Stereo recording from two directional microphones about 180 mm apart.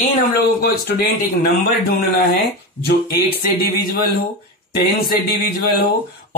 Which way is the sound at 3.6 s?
60° left (ahead or behind).